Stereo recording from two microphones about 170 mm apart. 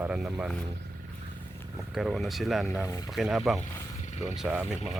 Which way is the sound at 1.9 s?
Centre (ahead or behind).